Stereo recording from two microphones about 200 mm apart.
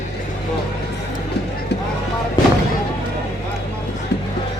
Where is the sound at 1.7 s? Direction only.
60° left (ahead or behind).